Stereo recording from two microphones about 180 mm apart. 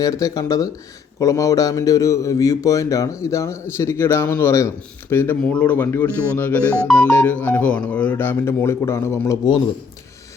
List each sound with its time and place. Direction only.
0.0 s speech: 20° left (ahead or behind)